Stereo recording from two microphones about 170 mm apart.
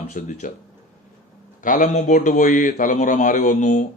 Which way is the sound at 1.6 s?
50° left (ahead or behind).